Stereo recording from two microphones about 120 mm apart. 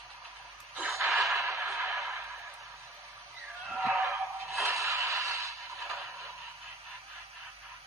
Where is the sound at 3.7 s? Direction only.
Centre (ahead or behind).